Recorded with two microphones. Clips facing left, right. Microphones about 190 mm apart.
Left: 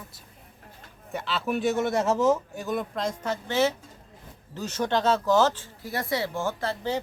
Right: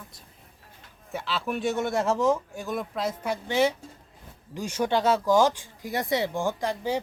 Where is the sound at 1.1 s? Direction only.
Centre (ahead or behind).